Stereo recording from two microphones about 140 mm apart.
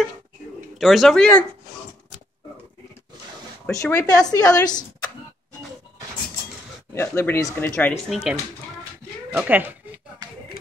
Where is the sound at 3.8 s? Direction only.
20° left (ahead or behind).